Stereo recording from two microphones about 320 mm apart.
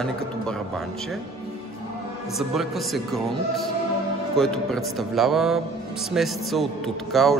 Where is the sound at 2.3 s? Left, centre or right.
Centre.